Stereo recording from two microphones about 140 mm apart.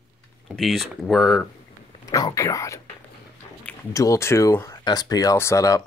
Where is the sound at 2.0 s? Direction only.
25° left (ahead or behind).